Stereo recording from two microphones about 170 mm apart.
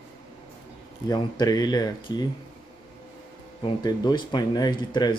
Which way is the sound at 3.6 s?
25° left (ahead or behind).